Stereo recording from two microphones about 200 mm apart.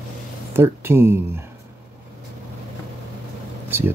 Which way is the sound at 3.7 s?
10° right (ahead or behind).